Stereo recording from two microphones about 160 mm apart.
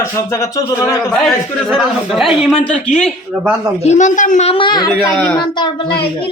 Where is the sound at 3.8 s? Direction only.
45° left (ahead or behind); by 5.7 s 25° left (ahead or behind).